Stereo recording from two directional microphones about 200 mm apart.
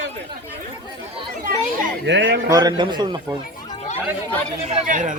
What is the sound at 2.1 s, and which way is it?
Speech, 65° right (ahead or behind).